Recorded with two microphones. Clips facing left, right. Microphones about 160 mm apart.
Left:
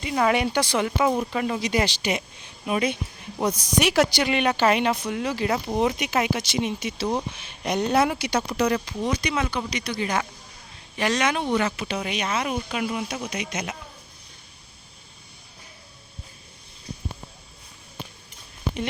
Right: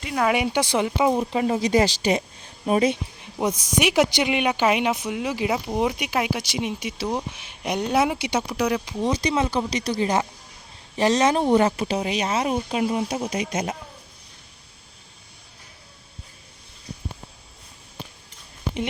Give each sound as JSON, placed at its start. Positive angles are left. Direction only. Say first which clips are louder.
{"t": 0.0, "sound": "speech", "louder": "even", "side_deg": 0}
{"t": 0.3, "sound": "speech", "louder": "right 1 dB", "side_deg": -15}
{"t": 1.5, "sound": "speech", "louder": "right 5 dB", "side_deg": -40}
{"t": 3.8, "sound": "speech", "louder": "right 1 dB", "side_deg": -15}
{"t": 9.0, "sound": "speech", "louder": "right 4 dB", "side_deg": -35}